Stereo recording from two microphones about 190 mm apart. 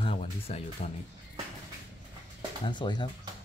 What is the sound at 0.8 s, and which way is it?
Speech, 40° left (ahead or behind).